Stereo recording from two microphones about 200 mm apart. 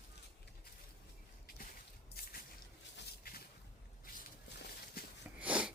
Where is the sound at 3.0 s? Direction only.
50° left (ahead or behind).